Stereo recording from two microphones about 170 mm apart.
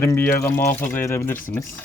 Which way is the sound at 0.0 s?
15° left (ahead or behind).